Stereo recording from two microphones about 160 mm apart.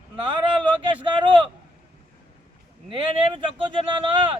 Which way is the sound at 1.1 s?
30° right (ahead or behind).